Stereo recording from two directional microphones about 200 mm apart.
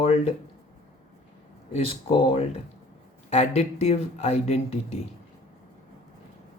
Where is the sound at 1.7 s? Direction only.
30° left (ahead or behind).